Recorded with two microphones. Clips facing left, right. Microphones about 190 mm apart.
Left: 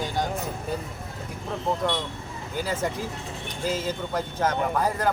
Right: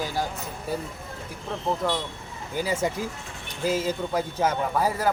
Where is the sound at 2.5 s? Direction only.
10° right (ahead or behind).